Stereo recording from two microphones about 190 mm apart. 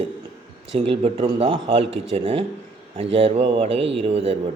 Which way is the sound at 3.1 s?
30° right (ahead or behind).